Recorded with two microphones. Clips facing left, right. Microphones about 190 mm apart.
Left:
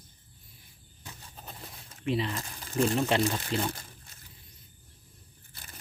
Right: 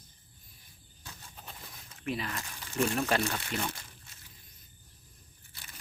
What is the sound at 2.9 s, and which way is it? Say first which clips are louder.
Speech: left 3 dB; 20° left (ahead or behind).